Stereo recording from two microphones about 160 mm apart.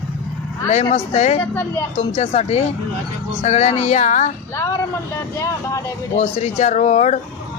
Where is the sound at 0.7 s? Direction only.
45° left (ahead or behind).